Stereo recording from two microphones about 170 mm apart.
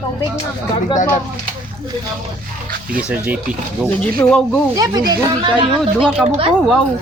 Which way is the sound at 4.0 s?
5° left (ahead or behind).